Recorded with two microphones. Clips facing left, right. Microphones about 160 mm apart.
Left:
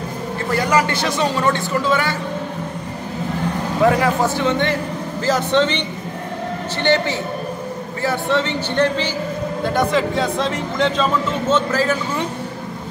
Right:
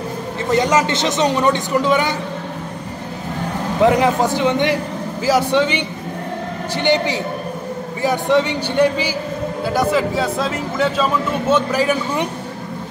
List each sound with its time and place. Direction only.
0.5 s speech: 20° right (ahead or behind)
3.8 s speech: 20° right (ahead or behind)